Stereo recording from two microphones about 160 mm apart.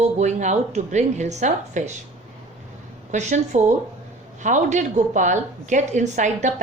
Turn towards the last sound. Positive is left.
turn(degrees=-50)  # may be behind; listen again after turning